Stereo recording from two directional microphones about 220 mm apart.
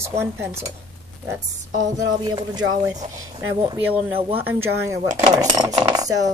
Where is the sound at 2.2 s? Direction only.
20° right (ahead or behind).